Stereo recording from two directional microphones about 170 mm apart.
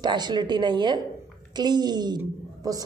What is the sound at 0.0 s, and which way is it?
A woman's voice, 25° right (ahead or behind).